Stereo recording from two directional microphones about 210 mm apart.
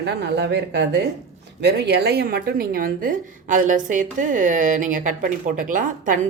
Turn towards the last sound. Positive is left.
turn(degrees=-40)  # may be behind; listen again after turning